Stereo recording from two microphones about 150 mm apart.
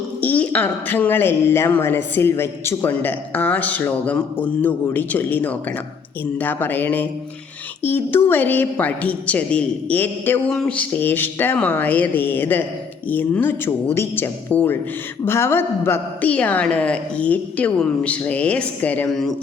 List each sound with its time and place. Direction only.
0.2 s a woman's voice: 10° left (ahead or behind)